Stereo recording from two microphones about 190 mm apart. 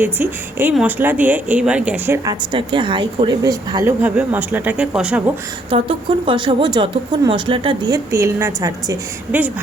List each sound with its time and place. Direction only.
0.0 s a woman's voice: 10° right (ahead or behind)
2.2 s a woman's voice: 25° right (ahead or behind); by 5.2 s 5° right (ahead or behind)
5.7 s speech: 25° right (ahead or behind)